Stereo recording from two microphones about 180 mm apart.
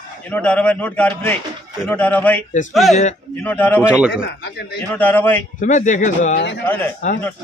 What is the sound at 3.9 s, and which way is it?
Speech, 5° right (ahead or behind).